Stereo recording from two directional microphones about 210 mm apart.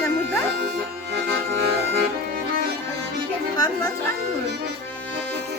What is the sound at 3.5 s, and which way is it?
Music, 20° left (ahead or behind).